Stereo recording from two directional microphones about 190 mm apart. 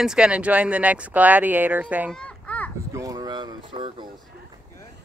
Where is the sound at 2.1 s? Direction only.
5° left (ahead or behind).